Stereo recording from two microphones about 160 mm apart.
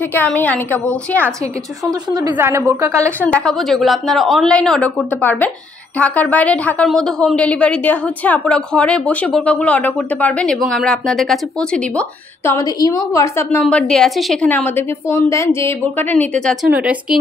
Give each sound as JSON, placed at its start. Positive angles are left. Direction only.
{"t": 0.1, "sound": "a woman's voice", "side_deg": 10}
{"t": 2.3, "sound": "a woman's voice", "side_deg": -15}
{"t": 3.2, "sound": "a woman's voice", "side_deg": 5}
{"t": 12.4, "sound": "a woman's voice", "side_deg": 20}